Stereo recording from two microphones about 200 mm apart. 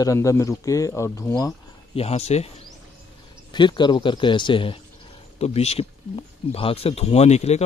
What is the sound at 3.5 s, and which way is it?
Speech, 25° left (ahead or behind).